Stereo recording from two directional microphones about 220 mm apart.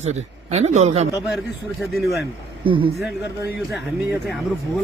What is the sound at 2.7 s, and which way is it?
Speech, 25° right (ahead or behind).